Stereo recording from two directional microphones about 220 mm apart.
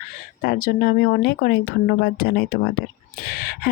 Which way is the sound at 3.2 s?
45° left (ahead or behind).